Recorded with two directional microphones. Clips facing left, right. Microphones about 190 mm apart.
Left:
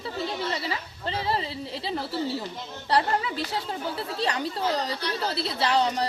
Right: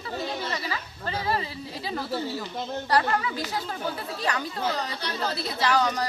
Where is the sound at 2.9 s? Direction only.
25° left (ahead or behind).